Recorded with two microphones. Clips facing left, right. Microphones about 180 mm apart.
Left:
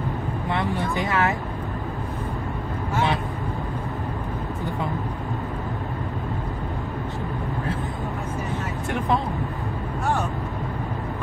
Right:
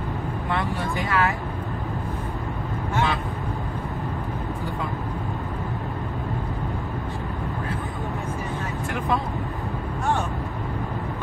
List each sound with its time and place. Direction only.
0.5 s speech: 20° left (ahead or behind)